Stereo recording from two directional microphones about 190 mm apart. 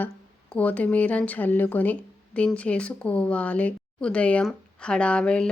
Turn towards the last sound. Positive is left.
turn(degrees=5)  # may be behind; listen again after turning